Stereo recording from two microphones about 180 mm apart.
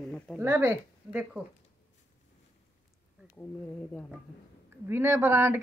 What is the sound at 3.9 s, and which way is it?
Speech, 5° left (ahead or behind).